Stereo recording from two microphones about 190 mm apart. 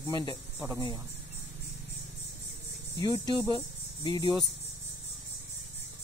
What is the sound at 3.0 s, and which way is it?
Speech, 20° left (ahead or behind).